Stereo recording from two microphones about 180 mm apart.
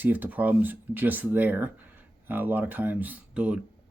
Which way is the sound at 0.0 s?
10° right (ahead or behind).